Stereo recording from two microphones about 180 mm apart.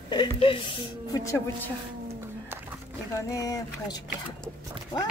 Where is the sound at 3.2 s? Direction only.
20° left (ahead or behind).